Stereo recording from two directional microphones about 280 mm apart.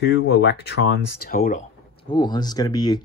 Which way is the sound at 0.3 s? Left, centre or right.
Left.